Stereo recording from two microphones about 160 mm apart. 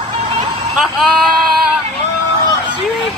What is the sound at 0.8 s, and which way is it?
Speech, centre (ahead or behind).